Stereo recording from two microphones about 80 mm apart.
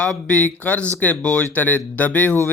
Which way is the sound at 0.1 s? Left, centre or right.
Centre.